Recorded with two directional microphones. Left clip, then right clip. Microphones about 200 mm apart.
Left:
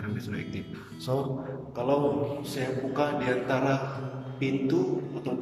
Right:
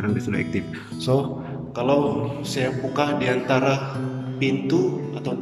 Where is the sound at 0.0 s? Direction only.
35° right (ahead or behind).